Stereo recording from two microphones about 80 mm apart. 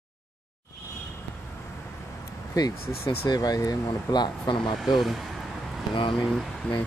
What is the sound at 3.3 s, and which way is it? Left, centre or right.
Speech, left.